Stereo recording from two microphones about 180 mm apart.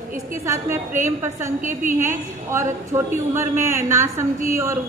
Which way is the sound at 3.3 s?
15° right (ahead or behind).